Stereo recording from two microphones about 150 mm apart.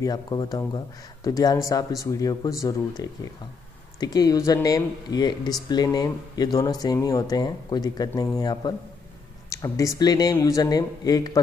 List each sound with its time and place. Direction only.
0.0 s speech: 25° left (ahead or behind)